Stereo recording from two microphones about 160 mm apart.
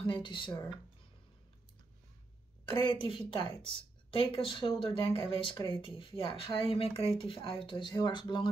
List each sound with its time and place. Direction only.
0.0 s speech: 30° left (ahead or behind)
2.8 s a woman's voice: 30° left (ahead or behind)